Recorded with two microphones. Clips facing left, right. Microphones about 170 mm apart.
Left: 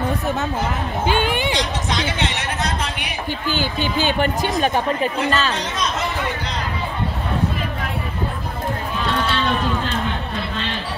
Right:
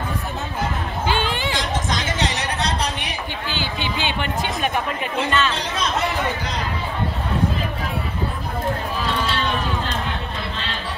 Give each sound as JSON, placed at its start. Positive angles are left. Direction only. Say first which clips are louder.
{"t": 1.0, "sound": "chatter", "louder": "left 3 dB", "side_deg": 15}
{"t": 1.9, "sound": "a sound", "louder": "left 1 dB", "side_deg": -45}
{"t": 3.4, "sound": "a woman's voice", "louder": "left 5 dB", "side_deg": 45}